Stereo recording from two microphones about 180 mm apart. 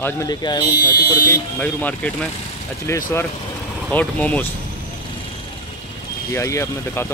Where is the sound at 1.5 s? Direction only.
10° left (ahead or behind).